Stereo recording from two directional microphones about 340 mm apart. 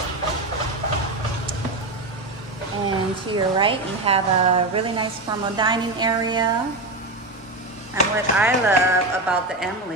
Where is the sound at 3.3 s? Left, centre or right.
Centre.